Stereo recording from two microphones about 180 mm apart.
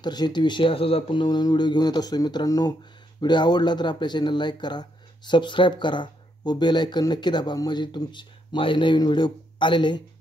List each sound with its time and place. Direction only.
0.0 s speech: 25° left (ahead or behind)